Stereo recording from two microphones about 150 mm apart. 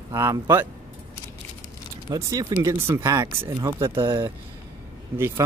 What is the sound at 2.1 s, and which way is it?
Speech, 25° right (ahead or behind).